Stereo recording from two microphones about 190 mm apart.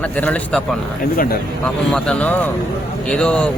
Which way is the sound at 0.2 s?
5° left (ahead or behind).